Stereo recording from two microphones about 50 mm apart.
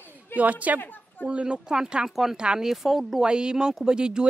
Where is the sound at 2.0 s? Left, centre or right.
Centre.